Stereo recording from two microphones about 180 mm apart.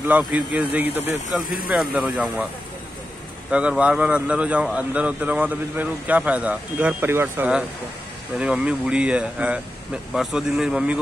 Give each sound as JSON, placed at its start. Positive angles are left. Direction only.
{"t": 0.1, "sound": "speech", "side_deg": -5}
{"t": 3.4, "sound": "speech", "side_deg": -5}